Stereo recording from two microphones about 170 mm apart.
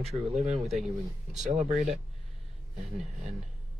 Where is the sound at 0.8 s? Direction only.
Centre (ahead or behind).